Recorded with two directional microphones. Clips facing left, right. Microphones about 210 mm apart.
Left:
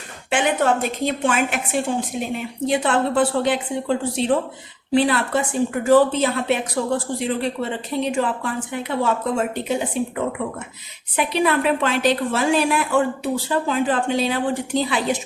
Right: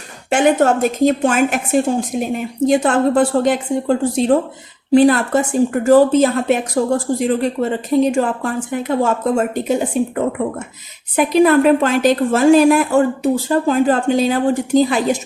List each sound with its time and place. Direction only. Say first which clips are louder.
0.3 s speech: right 6 dB; 45° right (ahead or behind)